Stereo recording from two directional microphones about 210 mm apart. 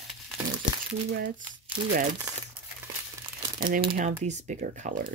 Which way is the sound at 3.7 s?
40° right (ahead or behind).